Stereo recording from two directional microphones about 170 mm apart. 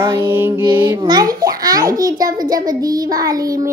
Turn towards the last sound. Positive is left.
turn(degrees=-20)  # may be behind; listen again after turning